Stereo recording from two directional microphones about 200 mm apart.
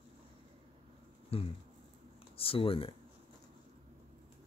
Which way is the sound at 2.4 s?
30° left (ahead or behind).